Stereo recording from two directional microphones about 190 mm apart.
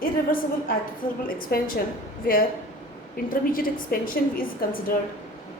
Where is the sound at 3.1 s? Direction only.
50° left (ahead or behind).